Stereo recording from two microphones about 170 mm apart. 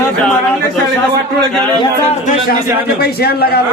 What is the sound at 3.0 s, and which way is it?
Speech, 65° left (ahead or behind).